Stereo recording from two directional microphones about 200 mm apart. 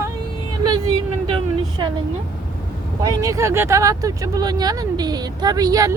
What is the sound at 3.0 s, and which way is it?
Speech, 15° right (ahead or behind).